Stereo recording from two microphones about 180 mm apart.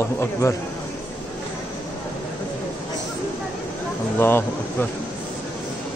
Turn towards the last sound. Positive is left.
turn(degrees=10)  # may be behind; listen again after turning